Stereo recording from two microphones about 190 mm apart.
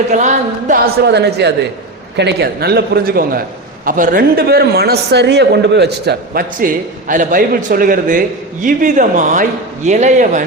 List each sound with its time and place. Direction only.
0.1 s a man's voice: 40° right (ahead or behind)
1.0 s a man's voice: 60° right (ahead or behind)
7.1 s a man's voice: 45° right (ahead or behind)